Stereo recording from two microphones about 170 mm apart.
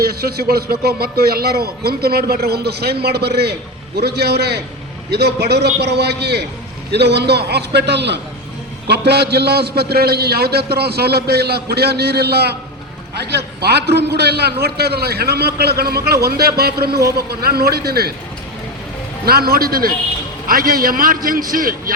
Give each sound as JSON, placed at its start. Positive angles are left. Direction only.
{"t": 0.0, "sound": "a man's voice", "side_deg": -65}
{"t": 19.2, "sound": "a man's voice", "side_deg": -65}